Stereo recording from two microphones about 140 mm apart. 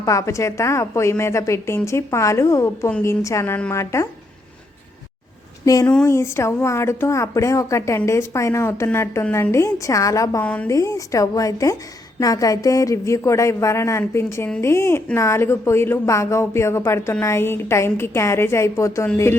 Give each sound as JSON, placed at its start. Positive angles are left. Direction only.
{"t": 0.0, "sound": "a woman's voice", "side_deg": 20}
{"t": 5.6, "sound": "a woman's voice", "side_deg": 25}
{"t": 10.4, "sound": "speech", "side_deg": 10}
{"t": 10.7, "sound": "a woman's voice", "side_deg": 20}